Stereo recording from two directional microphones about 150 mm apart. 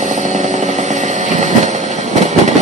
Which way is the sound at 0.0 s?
55° right (ahead or behind).